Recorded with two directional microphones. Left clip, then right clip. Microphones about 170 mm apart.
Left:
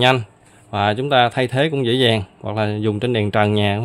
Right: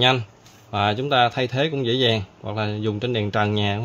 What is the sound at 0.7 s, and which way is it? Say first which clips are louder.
Speech: left 3 dB; 25° left (ahead or behind).